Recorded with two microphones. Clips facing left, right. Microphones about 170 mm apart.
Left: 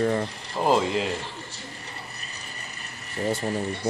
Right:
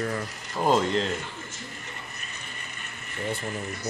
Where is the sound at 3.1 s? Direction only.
35° left (ahead or behind).